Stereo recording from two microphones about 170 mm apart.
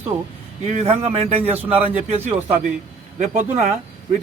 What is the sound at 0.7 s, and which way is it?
Speech, 40° right (ahead or behind).